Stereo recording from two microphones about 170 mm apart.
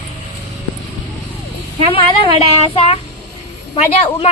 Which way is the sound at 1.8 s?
35° left (ahead or behind).